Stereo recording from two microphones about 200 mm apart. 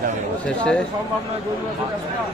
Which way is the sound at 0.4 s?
5° left (ahead or behind).